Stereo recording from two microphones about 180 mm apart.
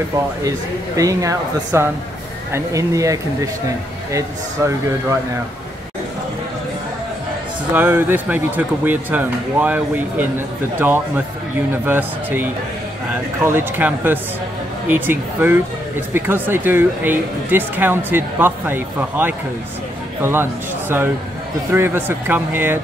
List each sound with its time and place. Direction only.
0.4 s speech: 20° right (ahead or behind)
7.7 s a man's voice: 10° right (ahead or behind)
21.7 s speech: 10° right (ahead or behind)